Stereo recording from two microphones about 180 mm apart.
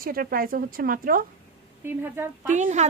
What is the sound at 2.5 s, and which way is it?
Speech, 40° right (ahead or behind).